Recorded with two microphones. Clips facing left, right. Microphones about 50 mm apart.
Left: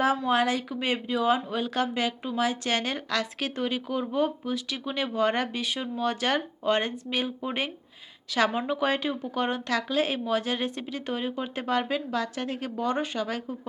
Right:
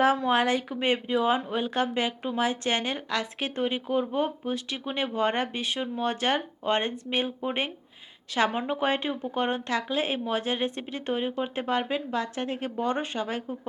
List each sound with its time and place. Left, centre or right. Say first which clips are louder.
0.3 s speech: right 1 dB; right
8.4 s a woman's voice: left 1 dB; centre
8.7 s speech: even; right
11.2 s speech: right 2 dB; centre